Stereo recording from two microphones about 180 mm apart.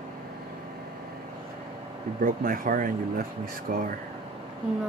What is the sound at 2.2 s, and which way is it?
Speech, 55° right (ahead or behind).